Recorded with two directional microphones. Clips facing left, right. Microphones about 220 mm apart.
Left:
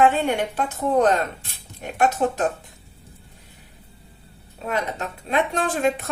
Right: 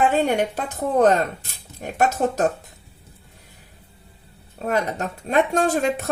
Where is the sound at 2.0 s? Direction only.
40° right (ahead or behind).